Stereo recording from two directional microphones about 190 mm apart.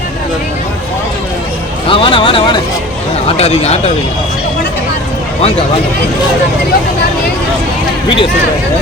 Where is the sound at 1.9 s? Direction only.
25° left (ahead or behind).